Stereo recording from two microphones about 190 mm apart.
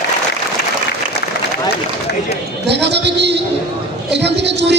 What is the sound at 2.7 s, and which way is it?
A man's voice, 65° right (ahead or behind).